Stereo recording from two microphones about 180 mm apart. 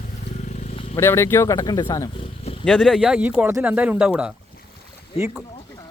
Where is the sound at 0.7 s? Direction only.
35° left (ahead or behind).